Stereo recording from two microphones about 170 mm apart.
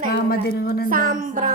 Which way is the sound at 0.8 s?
55° right (ahead or behind).